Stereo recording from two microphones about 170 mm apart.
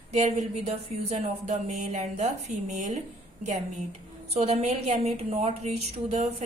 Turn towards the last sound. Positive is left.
turn(degrees=-40)  # may be behind; listen again after turning